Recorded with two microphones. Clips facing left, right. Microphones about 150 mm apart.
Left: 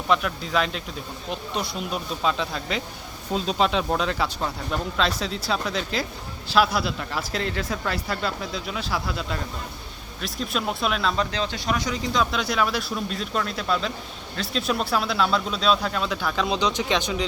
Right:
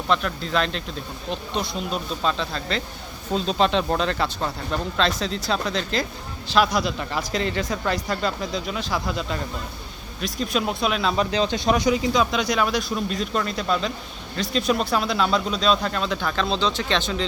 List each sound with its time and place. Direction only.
0.1 s speech: 10° left (ahead or behind)
11.2 s speech: 15° right (ahead or behind)
11.9 s speech: 5° right (ahead or behind); by 17.2 s 15° left (ahead or behind)